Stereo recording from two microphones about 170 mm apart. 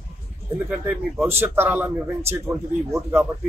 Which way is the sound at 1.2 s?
15° right (ahead or behind).